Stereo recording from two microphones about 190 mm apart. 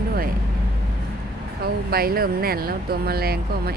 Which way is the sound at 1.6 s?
55° right (ahead or behind).